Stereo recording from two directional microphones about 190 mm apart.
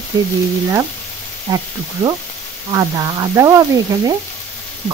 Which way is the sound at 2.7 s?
20° right (ahead or behind).